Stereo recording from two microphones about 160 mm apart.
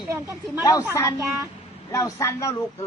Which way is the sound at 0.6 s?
25° left (ahead or behind).